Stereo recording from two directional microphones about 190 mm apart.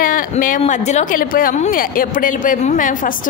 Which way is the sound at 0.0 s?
45° left (ahead or behind).